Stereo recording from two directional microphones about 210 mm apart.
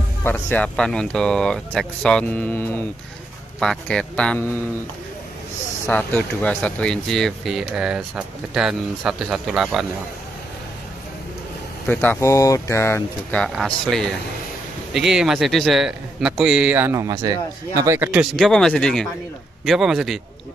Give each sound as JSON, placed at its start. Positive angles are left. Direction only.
{"t": 0.2, "sound": "speech", "side_deg": 10}
{"t": 5.9, "sound": "speech", "side_deg": 5}
{"t": 11.9, "sound": "speech", "side_deg": 10}
{"t": 18.3, "sound": "speech", "side_deg": 0}